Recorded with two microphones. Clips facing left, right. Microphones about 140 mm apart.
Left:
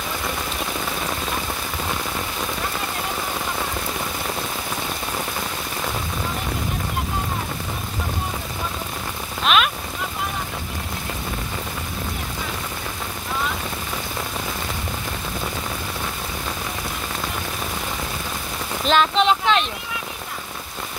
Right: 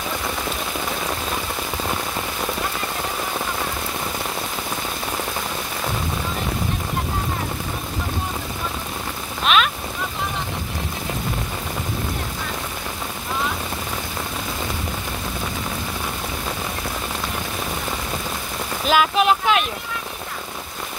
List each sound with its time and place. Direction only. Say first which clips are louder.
9.4 s rain: even; centre (ahead or behind)
18.9 s speech: even; 5° right (ahead or behind)